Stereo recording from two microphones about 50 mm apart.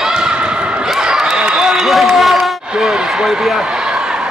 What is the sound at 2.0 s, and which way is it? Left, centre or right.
Run, centre.